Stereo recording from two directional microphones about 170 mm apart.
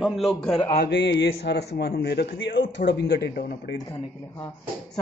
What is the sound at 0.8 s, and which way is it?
A man's voice, 90° left.